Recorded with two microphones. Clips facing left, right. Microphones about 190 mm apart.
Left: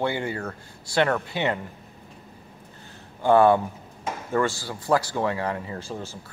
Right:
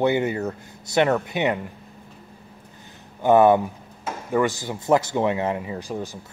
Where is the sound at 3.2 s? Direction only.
20° right (ahead or behind).